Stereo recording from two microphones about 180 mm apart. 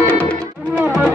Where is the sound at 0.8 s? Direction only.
5° right (ahead or behind).